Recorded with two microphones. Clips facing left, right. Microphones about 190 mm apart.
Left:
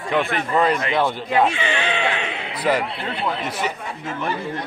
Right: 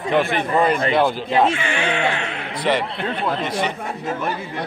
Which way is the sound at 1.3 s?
25° right (ahead or behind).